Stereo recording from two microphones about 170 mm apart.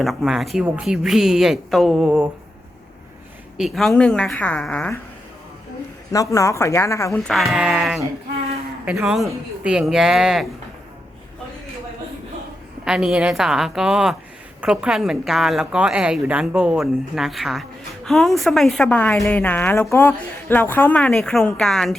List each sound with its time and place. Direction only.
0.0 s a woman's voice: centre (ahead or behind)
3.6 s a woman's voice: centre (ahead or behind)
6.1 s speech: 20° left (ahead or behind)
7.2 s a woman's voice: centre (ahead or behind)
12.8 s a woman's voice: 5° right (ahead or behind)